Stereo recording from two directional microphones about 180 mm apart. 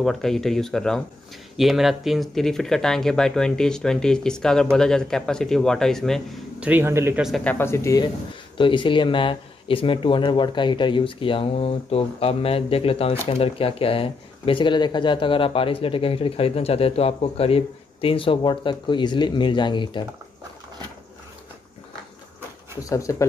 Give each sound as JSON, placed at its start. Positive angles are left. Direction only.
{"t": 0.0, "sound": "speech", "side_deg": 0}
{"t": 6.7, "sound": "speech", "side_deg": -15}
{"t": 7.2, "sound": "speech", "side_deg": 0}
{"t": 7.5, "sound": "speech", "side_deg": 15}
{"t": 22.8, "sound": "speech", "side_deg": 20}